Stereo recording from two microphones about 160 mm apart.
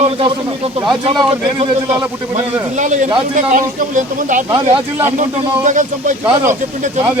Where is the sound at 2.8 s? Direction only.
50° right (ahead or behind).